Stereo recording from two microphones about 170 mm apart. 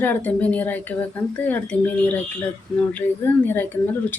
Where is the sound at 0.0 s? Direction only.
10° left (ahead or behind).